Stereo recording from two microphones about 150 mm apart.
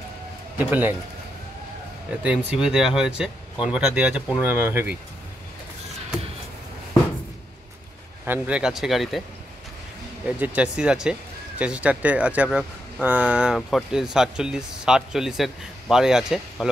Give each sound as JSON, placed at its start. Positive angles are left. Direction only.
{"t": 0.6, "sound": "speech", "side_deg": -10}
{"t": 2.2, "sound": "speech", "side_deg": -5}
{"t": 8.3, "sound": "speech", "side_deg": -5}
{"t": 10.2, "sound": "speech", "side_deg": -10}